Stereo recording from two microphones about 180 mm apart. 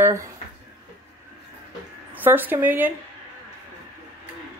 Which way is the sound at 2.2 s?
10° right (ahead or behind).